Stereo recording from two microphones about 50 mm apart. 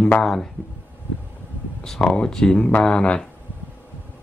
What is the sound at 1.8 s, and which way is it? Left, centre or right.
Speech, centre.